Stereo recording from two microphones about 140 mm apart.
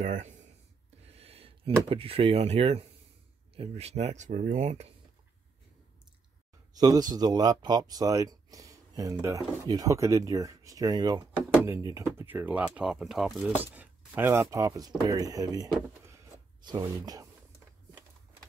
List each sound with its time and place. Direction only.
0.0 s speech: 60° right (ahead or behind)
1.0 s speech: 45° right (ahead or behind)
6.7 s speech: 25° right (ahead or behind)